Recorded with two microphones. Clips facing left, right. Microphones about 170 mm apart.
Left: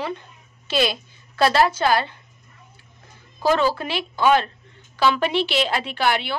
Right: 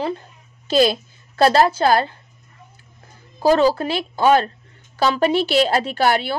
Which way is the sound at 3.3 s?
40° right (ahead or behind).